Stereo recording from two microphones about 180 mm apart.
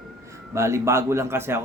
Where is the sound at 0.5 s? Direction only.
15° right (ahead or behind).